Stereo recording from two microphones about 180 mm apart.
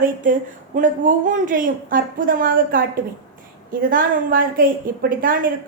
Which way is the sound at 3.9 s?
50° right (ahead or behind).